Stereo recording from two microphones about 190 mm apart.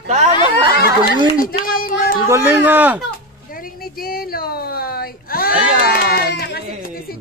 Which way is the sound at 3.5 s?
50° left (ahead or behind).